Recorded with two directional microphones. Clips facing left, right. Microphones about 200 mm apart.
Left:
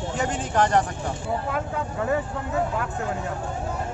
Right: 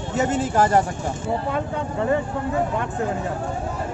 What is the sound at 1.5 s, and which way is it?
Speech, 5° left (ahead or behind).